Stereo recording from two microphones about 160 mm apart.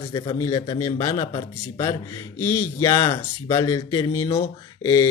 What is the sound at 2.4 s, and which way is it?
Speech, 15° left (ahead or behind).